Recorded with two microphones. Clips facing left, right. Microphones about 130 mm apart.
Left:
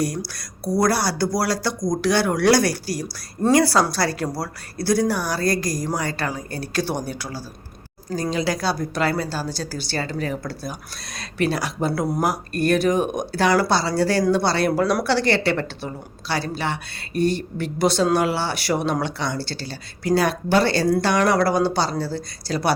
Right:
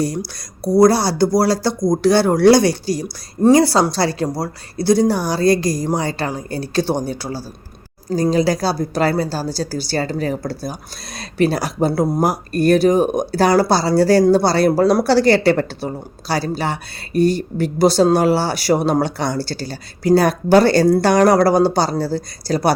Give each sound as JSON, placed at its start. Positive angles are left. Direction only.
{"t": 0.0, "sound": "speech", "side_deg": -25}